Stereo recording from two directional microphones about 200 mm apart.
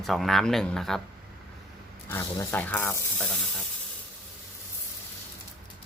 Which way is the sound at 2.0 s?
10° left (ahead or behind).